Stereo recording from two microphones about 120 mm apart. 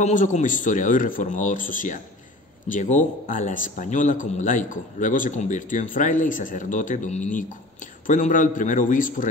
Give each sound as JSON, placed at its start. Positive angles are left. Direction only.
{"t": 0.0, "sound": "speech", "side_deg": 90}